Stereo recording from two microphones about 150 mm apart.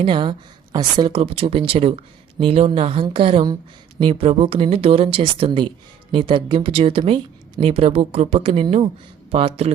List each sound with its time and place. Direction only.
0.0 s speech: 35° right (ahead or behind)